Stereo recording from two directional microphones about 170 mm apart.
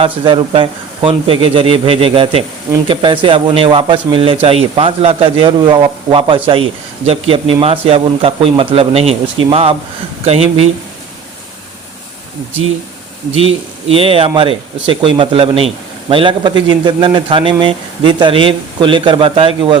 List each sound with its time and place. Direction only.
0.0 s speech: 30° right (ahead or behind)
13.3 s speech: 35° right (ahead or behind)